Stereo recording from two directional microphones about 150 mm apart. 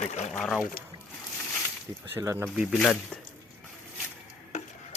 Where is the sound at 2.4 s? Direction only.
5° right (ahead or behind).